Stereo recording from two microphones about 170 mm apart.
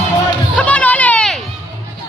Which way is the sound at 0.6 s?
10° left (ahead or behind).